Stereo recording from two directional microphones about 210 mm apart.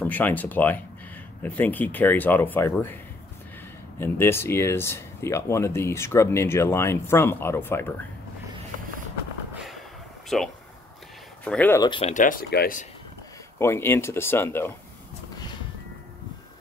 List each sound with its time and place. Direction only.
0.0 s speech: 10° left (ahead or behind)
4.0 s speech: 10° left (ahead or behind)
10.3 s speech: centre (ahead or behind)
11.9 s speech: 30° left (ahead or behind)
13.6 s speech: 10° left (ahead or behind)